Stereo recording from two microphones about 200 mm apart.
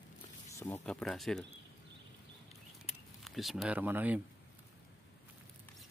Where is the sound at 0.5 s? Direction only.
10° left (ahead or behind).